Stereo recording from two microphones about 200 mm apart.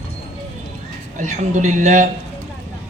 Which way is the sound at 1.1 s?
40° right (ahead or behind).